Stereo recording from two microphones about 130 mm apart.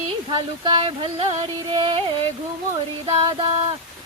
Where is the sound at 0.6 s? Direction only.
35° right (ahead or behind).